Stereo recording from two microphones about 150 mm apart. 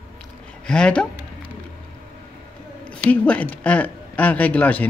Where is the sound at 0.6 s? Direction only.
5° left (ahead or behind).